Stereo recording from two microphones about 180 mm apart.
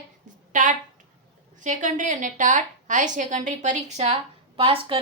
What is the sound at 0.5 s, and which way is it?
A woman's voice, 45° right (ahead or behind).